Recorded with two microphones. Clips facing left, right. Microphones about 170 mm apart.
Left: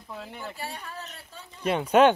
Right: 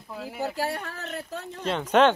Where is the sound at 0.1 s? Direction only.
5° right (ahead or behind).